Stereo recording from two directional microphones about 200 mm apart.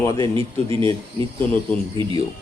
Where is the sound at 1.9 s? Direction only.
20° right (ahead or behind).